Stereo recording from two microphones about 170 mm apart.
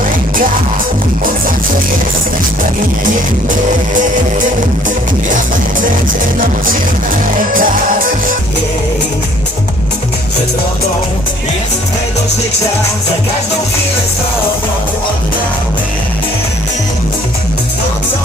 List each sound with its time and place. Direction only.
7.5 s music: 55° right (ahead or behind)